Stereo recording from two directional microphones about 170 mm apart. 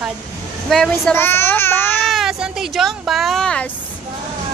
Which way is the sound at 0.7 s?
5° left (ahead or behind).